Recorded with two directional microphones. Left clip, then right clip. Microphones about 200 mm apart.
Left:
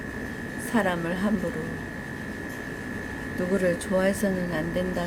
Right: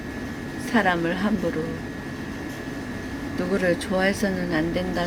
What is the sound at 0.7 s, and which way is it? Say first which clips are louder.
Speech: right 5 dB; 15° left (ahead or behind).